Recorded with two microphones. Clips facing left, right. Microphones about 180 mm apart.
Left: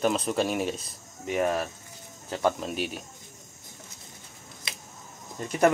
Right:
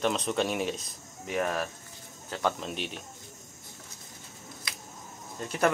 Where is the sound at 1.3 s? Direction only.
15° left (ahead or behind).